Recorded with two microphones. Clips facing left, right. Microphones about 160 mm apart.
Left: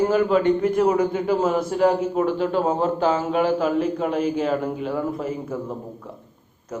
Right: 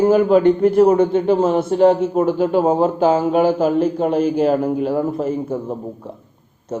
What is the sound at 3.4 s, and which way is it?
Speech, 45° right (ahead or behind).